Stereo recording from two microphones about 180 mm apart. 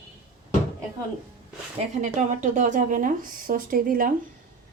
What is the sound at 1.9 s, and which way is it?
Speech, 40° right (ahead or behind).